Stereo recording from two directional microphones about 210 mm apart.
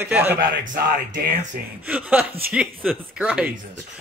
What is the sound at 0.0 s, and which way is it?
Speech, 10° right (ahead or behind).